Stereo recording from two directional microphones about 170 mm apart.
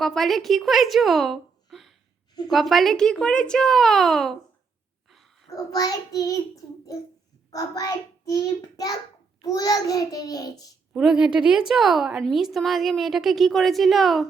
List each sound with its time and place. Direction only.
0.0 s a woman's voice: centre (ahead or behind)
5.0 s a sound: centre (ahead or behind)
5.5 s child singing: 20° left (ahead or behind)
7.5 s child singing: 20° left (ahead or behind)
10.9 s a woman's voice: 5° right (ahead or behind)